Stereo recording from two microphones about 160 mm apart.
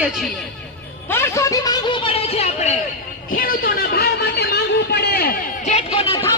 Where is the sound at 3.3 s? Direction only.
65° left (ahead or behind).